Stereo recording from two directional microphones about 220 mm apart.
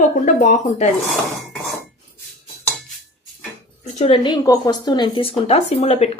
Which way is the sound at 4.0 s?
25° left (ahead or behind).